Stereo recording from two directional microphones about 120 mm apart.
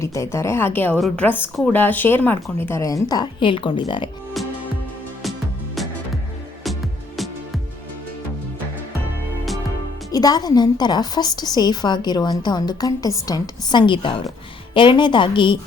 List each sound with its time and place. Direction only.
0.0 s a woman's voice: 25° left (ahead or behind)
0.9 s a woman's voice: centre (ahead or behind)
1.2 s a woman's voice: 15° left (ahead or behind); by 4.1 s 40° left (ahead or behind)
10.1 s a woman's voice: 30° left (ahead or behind)